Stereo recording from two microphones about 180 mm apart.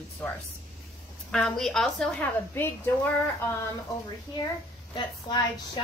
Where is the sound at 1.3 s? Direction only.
5° left (ahead or behind).